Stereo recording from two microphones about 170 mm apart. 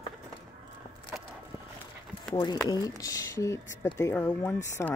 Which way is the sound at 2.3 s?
25° left (ahead or behind).